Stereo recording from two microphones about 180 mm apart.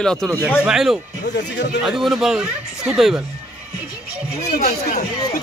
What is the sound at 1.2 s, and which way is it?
Speech, 65° left (ahead or behind).